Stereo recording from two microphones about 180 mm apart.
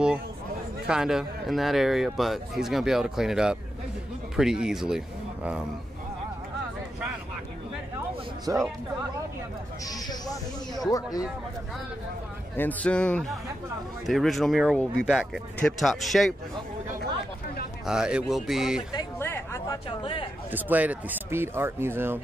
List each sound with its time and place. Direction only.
0.8 s speech: 5° right (ahead or behind)
8.5 s speech: 20° right (ahead or behind)
9.8 s speech: 20° left (ahead or behind)
12.5 s a man's voice: 10° left (ahead or behind)
17.8 s speech: 5° right (ahead or behind)
18.9 s a sound: 15° left (ahead or behind)
20.0 s speech: 30° left (ahead or behind)
20.5 s speech: 10° right (ahead or behind)